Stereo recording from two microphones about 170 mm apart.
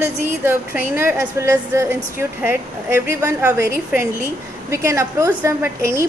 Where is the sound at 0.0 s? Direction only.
15° right (ahead or behind).